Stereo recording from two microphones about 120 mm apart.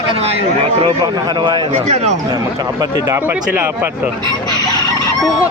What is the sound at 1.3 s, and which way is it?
Speech, 40° right (ahead or behind).